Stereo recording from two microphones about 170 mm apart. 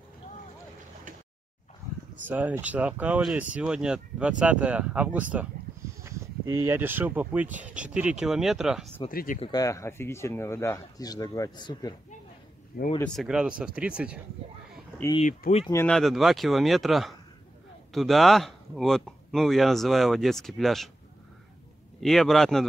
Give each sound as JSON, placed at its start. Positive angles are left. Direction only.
{"t": 2.2, "sound": "speech", "side_deg": -10}
{"t": 9.1, "sound": "speech", "side_deg": 55}
{"t": 9.4, "sound": "speech", "side_deg": 20}
{"t": 13.0, "sound": "speech", "side_deg": 0}
{"t": 15.4, "sound": "speech", "side_deg": 60}
{"t": 15.9, "sound": "speech", "side_deg": 0}
{"t": 22.0, "sound": "speech", "side_deg": 0}